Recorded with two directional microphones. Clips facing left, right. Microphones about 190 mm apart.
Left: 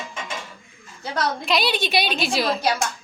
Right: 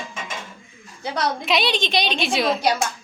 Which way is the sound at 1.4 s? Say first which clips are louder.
Right 1 dB; centre (ahead or behind).